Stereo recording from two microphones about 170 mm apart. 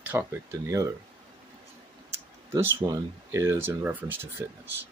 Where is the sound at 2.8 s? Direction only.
15° right (ahead or behind).